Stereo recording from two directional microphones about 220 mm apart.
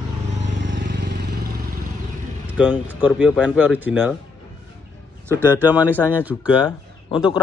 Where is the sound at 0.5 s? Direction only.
40° right (ahead or behind).